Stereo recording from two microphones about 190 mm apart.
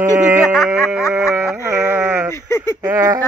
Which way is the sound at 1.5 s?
15° right (ahead or behind).